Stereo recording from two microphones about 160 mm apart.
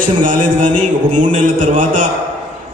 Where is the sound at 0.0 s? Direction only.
55° right (ahead or behind).